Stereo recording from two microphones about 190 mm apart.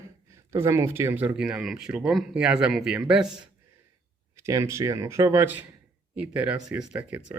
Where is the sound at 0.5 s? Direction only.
15° right (ahead or behind).